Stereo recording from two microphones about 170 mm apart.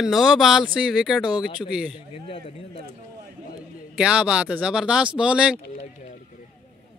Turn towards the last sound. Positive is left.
turn(degrees=-5)  # may be behind; listen again after turning